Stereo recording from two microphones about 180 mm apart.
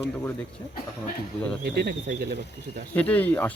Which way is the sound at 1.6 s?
60° right (ahead or behind).